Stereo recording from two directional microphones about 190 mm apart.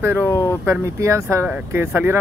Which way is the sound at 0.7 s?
15° right (ahead or behind).